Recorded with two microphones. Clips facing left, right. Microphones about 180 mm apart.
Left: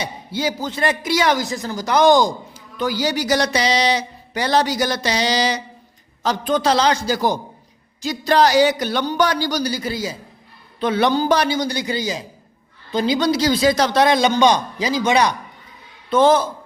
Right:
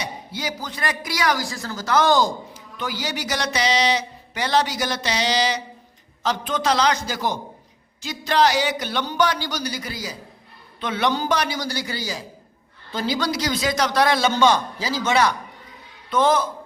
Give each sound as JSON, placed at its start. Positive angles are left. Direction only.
{"t": 0.0, "sound": "a man's voice", "side_deg": 30}
{"t": 2.5, "sound": "a man's voice", "side_deg": 35}
{"t": 16.0, "sound": "a man's voice", "side_deg": 30}